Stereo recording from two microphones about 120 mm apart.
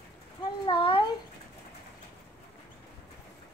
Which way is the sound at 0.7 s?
45° left (ahead or behind).